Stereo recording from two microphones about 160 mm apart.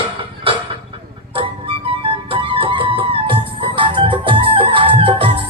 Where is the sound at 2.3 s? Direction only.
35° right (ahead or behind).